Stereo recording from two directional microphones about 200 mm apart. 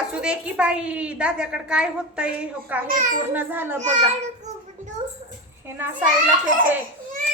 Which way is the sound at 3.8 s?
35° right (ahead or behind).